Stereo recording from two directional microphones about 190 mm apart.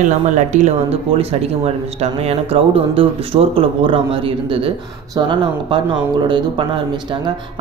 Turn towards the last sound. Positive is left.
turn(degrees=-25)  # may be behind; listen again after turning